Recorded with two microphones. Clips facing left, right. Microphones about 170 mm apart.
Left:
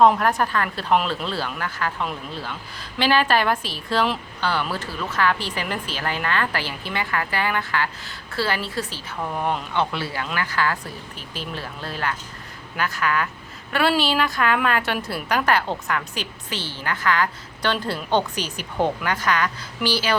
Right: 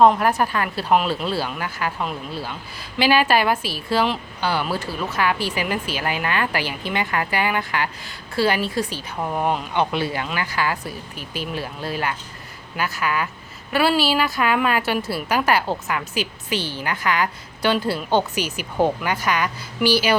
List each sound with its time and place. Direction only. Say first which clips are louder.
0.0 s speech: right 1 dB; 5° right (ahead or behind)